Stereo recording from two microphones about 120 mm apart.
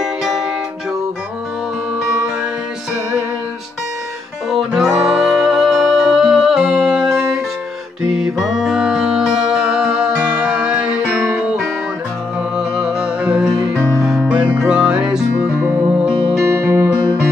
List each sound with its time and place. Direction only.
0.0 s music: centre (ahead or behind)
4.5 s music: centre (ahead or behind)
16.3 s music: 25° right (ahead or behind)